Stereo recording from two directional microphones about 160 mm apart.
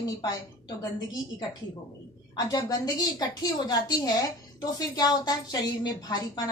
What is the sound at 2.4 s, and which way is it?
Speech, 25° left (ahead or behind).